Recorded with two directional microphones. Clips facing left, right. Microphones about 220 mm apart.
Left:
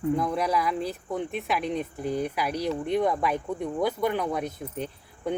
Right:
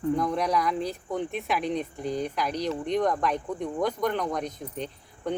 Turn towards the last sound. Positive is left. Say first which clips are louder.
# left 1 dB
turn(degrees=5)  # may be behind; listen again after turning